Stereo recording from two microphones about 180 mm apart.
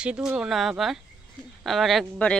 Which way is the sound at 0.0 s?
5° right (ahead or behind).